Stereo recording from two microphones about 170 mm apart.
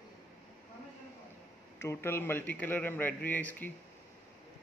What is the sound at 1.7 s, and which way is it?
A man's voice, 15° left (ahead or behind).